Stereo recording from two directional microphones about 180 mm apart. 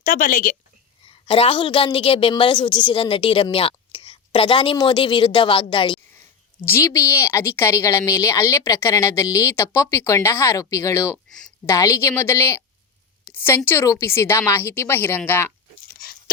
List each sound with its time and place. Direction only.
0.0 s a woman's voice: 50° left (ahead or behind)
1.0 s a woman's voice: 30° left (ahead or behind)
6.7 s a woman's voice: 15° left (ahead or behind)
16.0 s a sound: 60° left (ahead or behind)